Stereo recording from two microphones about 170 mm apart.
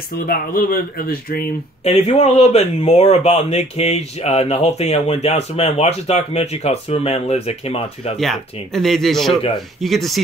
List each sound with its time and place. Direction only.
0.1 s speech: 60° left (ahead or behind)
1.9 s speech: 40° left (ahead or behind)
8.2 s speech: centre (ahead or behind)